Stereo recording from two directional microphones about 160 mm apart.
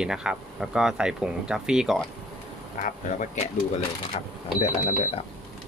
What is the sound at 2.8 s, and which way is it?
Speech, 55° left (ahead or behind).